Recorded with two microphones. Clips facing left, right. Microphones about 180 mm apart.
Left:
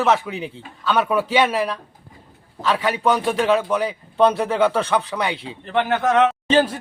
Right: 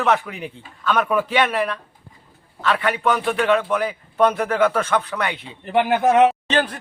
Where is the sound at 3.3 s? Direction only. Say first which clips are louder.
Even; 10° left (ahead or behind).